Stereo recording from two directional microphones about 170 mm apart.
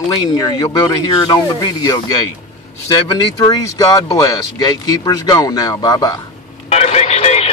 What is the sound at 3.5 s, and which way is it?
Speech, 20° left (ahead or behind).